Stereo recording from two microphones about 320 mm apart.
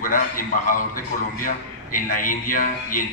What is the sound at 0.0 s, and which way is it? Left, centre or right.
A man's voice, left.